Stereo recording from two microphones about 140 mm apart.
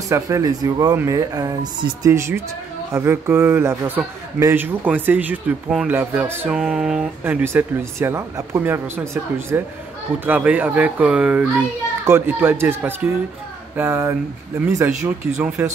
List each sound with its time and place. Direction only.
0.1 s speech: 25° right (ahead or behind)